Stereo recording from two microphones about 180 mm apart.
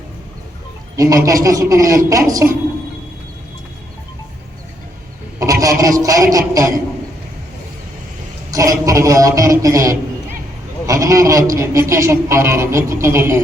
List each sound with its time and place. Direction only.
0.9 s a man's voice: 15° right (ahead or behind)
5.4 s a sound: 20° right (ahead or behind)
6.0 s speech: 20° right (ahead or behind)
8.4 s a man's voice: 20° right (ahead or behind)